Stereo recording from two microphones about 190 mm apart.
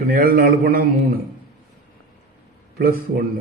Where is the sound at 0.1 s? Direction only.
50° right (ahead or behind).